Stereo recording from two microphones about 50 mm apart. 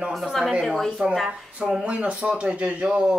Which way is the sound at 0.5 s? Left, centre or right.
Centre.